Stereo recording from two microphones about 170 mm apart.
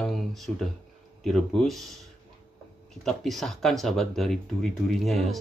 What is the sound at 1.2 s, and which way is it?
Speech, centre (ahead or behind).